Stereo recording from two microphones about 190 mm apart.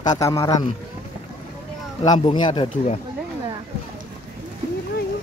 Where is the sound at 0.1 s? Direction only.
15° left (ahead or behind).